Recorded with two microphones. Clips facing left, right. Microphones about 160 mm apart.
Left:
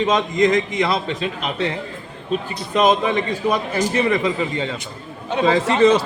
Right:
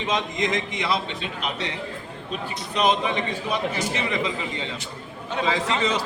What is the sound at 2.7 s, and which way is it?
A man's voice, 45° left (ahead or behind).